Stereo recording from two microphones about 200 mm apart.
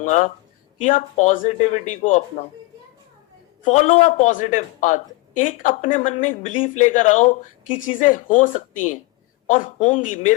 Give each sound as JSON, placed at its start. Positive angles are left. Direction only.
{"t": 0.0, "sound": "speech", "side_deg": 35}
{"t": 3.6, "sound": "speech", "side_deg": 40}